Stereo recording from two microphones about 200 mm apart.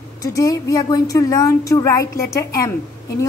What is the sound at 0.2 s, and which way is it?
Speech, 15° left (ahead or behind).